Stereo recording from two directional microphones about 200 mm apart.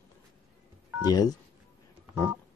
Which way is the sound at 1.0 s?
20° left (ahead or behind).